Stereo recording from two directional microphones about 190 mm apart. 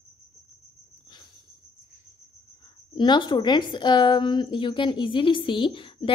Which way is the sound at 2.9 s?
25° left (ahead or behind).